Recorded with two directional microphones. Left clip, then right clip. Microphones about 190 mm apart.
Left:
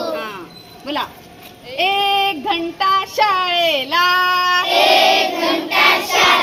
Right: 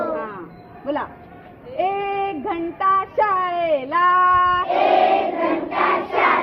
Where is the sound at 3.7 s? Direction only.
20° left (ahead or behind).